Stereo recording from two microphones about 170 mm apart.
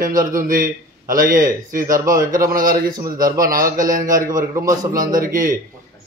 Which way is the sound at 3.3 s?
55° right (ahead or behind).